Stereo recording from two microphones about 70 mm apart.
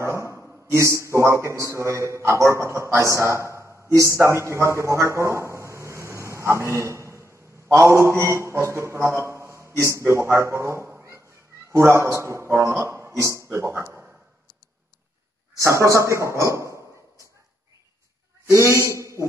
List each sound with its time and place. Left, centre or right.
0.0 s a sound: right
0.7 s a man's voice: right
15.6 s a man's voice: right
18.5 s a man's voice: right